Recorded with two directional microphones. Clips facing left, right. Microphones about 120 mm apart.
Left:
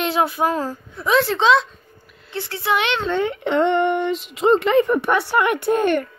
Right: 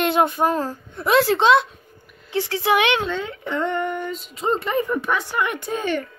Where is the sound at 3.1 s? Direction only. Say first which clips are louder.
Left 7 dB; 75° left (ahead or behind); by 6.0 s 60° left (ahead or behind).